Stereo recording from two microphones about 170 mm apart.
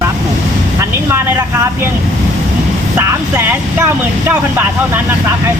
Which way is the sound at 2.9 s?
15° right (ahead or behind).